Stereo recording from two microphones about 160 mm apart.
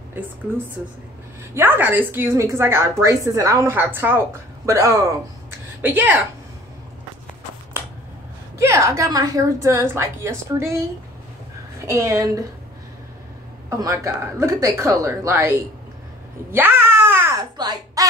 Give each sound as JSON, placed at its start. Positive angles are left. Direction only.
{"t": 1.5, "sound": "a woman's voice", "side_deg": -15}
{"t": 8.5, "sound": "a woman's voice", "side_deg": -15}
{"t": 11.8, "sound": "a woman's voice", "side_deg": -20}
{"t": 13.7, "sound": "a woman's voice", "side_deg": -20}
{"t": 16.5, "sound": "cat", "side_deg": -10}
{"t": 17.4, "sound": "a sound", "side_deg": -25}